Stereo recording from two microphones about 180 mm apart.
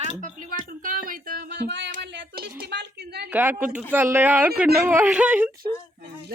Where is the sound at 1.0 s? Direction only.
55° right (ahead or behind); by 1.9 s 70° right (ahead or behind).